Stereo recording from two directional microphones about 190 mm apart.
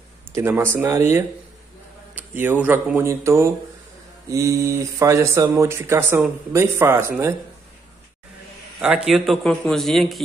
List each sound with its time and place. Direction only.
0.3 s speech: 15° right (ahead or behind)
8.7 s a man's voice: 5° right (ahead or behind)